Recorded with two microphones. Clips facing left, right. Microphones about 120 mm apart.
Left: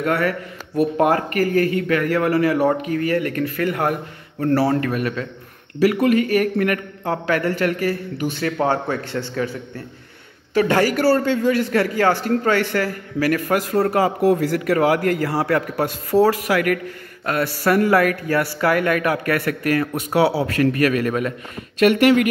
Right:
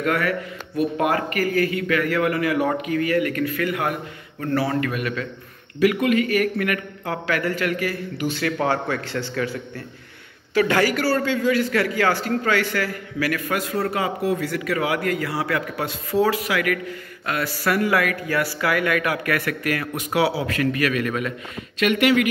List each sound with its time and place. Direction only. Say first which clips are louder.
0.0 s a man's voice: left 2 dB; 35° left (ahead or behind)
8.5 s a man's voice: left 3 dB; 25° left (ahead or behind)
10.6 s a man's voice: left 3 dB; 35° left (ahead or behind)